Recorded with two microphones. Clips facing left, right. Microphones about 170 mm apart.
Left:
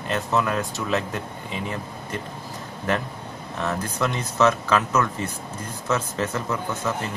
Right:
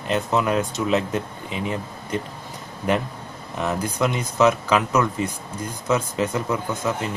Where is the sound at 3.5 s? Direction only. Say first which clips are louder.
Right 3 dB; 15° right (ahead or behind).